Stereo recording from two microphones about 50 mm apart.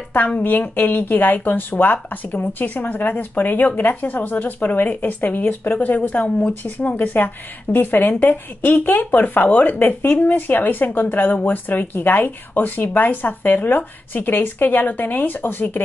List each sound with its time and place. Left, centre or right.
0.4 s speech: left
7.7 s speech: left